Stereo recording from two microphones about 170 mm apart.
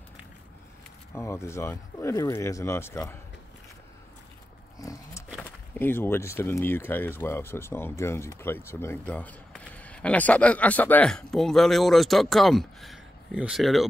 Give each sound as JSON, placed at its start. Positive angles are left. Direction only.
{"t": 1.1, "sound": "speech", "side_deg": 15}
{"t": 4.7, "sound": "roaring cats", "side_deg": 20}
{"t": 5.3, "sound": "speech", "side_deg": 10}